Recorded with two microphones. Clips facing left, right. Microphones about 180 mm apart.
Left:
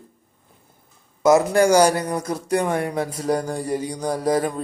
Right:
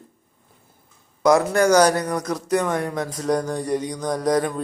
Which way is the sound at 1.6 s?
10° left (ahead or behind).